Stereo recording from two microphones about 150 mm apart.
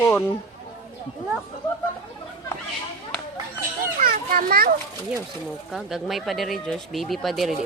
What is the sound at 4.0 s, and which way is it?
Children playing, 80° right.